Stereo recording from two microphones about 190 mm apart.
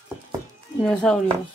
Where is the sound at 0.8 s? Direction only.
5° left (ahead or behind).